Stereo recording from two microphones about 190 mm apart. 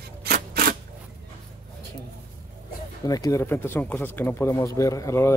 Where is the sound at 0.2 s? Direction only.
50° right (ahead or behind).